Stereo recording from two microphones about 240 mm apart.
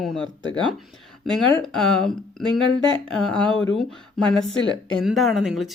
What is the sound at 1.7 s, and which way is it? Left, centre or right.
Speech, centre.